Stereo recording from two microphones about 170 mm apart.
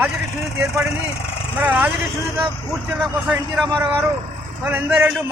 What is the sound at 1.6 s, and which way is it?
Speech, 10° right (ahead or behind).